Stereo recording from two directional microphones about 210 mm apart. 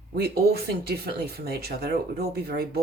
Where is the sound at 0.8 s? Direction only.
50° right (ahead or behind).